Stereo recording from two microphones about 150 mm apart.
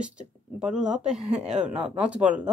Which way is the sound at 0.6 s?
5° right (ahead or behind).